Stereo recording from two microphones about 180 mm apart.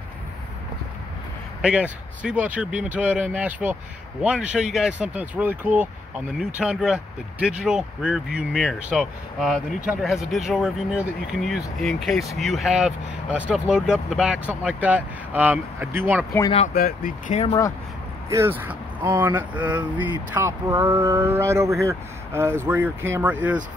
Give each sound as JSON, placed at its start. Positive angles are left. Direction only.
{"t": 1.6, "sound": "speech", "side_deg": -5}
{"t": 16.7, "sound": "speech", "side_deg": 50}
{"t": 18.3, "sound": "speech", "side_deg": -10}